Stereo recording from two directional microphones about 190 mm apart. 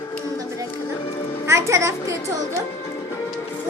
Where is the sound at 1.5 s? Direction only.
15° right (ahead or behind).